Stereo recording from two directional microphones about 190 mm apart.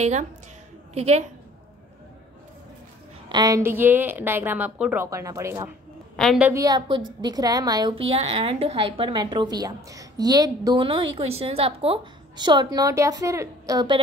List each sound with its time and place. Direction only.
0.0 s a woman's voice: 40° right (ahead or behind)
3.3 s a woman's voice: 20° right (ahead or behind)
6.1 s a woman's voice: centre (ahead or behind)
6.5 s a woman's voice: 20° right (ahead or behind)